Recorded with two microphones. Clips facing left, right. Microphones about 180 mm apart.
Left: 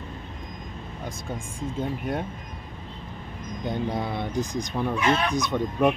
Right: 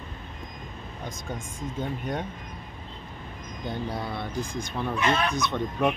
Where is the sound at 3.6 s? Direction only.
20° left (ahead or behind).